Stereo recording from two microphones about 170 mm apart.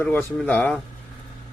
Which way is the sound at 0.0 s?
10° left (ahead or behind).